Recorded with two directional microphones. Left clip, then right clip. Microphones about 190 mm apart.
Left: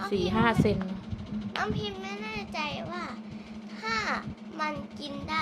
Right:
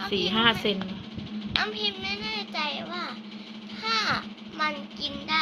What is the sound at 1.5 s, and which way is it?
Speech, 45° left (ahead or behind).